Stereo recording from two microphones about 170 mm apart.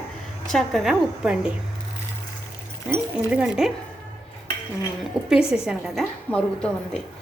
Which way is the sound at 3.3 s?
5° right (ahead or behind).